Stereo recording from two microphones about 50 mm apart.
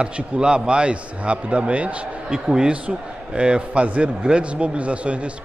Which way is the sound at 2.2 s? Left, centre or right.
Centre.